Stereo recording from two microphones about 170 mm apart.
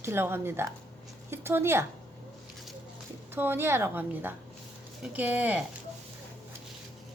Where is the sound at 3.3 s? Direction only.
15° right (ahead or behind).